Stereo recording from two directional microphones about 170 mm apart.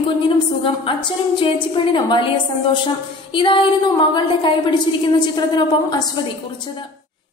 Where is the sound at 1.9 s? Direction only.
25° left (ahead or behind).